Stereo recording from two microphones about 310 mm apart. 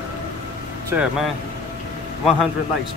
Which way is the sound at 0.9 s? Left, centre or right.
Centre.